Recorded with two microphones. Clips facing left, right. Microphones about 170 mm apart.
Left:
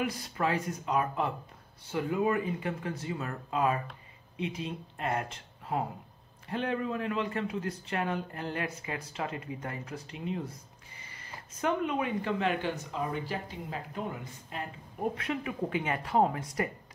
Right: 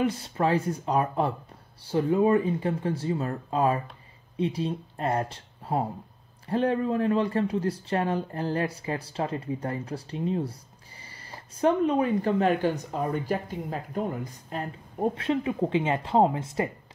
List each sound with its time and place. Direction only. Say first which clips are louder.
0.0 s speech: right 6 dB; 30° right (ahead or behind)